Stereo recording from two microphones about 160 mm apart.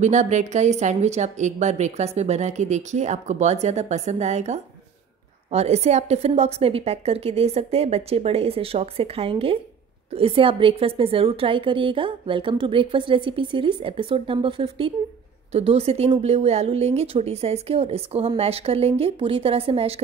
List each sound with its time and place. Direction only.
0.0 s a woman's voice: 50° right (ahead or behind)